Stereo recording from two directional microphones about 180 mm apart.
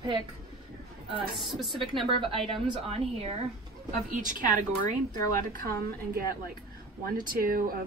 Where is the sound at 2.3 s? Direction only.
30° right (ahead or behind).